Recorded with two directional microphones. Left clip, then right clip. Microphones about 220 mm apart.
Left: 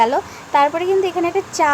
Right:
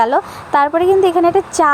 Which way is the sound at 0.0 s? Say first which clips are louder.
Right 2 dB; 20° right (ahead or behind).